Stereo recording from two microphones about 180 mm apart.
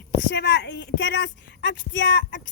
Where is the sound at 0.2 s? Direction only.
85° left.